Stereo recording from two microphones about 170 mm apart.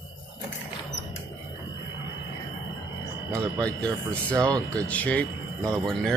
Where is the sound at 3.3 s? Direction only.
5° left (ahead or behind).